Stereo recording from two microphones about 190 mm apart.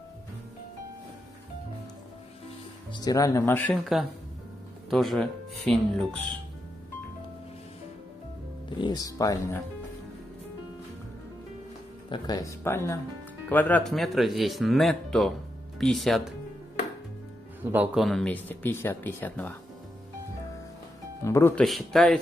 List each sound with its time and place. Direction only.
2.9 s speech: 20° left (ahead or behind)
4.8 s speech: centre (ahead or behind)
8.6 s speech: 25° left (ahead or behind)
12.1 s speech: 20° left (ahead or behind); by 16.3 s centre (ahead or behind)
17.6 s speech: 10° right (ahead or behind); by 19.5 s 10° left (ahead or behind)
21.2 s speech: 15° left (ahead or behind)
21.6 s speech: centre (ahead or behind)